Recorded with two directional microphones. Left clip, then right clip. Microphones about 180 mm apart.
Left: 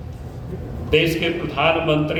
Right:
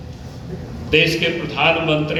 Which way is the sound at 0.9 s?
90° left.